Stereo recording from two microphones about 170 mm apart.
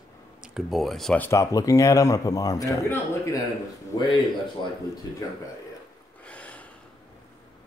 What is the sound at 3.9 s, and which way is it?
Speech, 20° left (ahead or behind).